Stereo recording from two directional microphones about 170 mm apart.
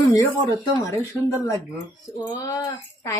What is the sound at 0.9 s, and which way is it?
Speech, 20° left (ahead or behind).